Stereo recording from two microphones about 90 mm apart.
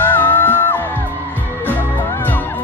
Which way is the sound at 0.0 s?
25° left (ahead or behind).